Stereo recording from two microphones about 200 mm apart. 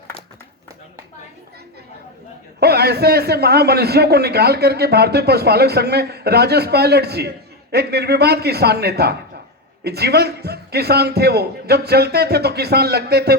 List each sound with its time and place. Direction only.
2.6 s a man's voice: 55° right (ahead or behind)